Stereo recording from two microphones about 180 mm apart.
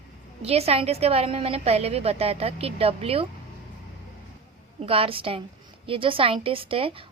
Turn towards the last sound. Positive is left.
turn(degrees=-30)  # may be behind; listen again after turning